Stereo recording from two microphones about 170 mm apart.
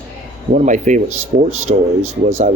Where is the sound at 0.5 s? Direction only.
45° right (ahead or behind).